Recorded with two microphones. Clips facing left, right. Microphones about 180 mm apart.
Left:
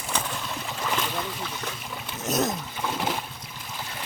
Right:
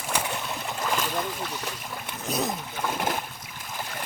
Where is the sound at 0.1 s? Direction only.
10° right (ahead or behind).